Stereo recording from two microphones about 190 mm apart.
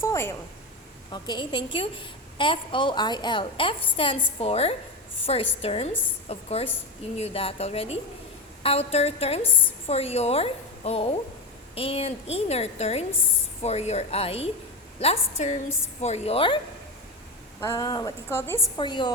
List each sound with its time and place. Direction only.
0.0 s a woman's voice: 15° left (ahead or behind); by 16.6 s 30° left (ahead or behind)
17.6 s a woman's voice: 15° left (ahead or behind)
18.8 s a woman's voice: 25° left (ahead or behind)